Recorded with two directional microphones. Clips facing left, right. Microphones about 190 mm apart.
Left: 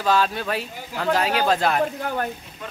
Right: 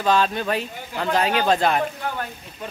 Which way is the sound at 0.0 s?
5° left (ahead or behind).